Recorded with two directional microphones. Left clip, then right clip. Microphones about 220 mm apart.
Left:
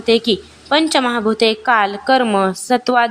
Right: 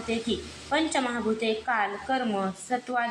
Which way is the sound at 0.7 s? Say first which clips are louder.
Left 12 dB; 45° left (ahead or behind).